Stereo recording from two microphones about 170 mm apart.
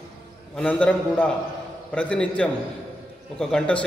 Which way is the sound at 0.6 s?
10° left (ahead or behind).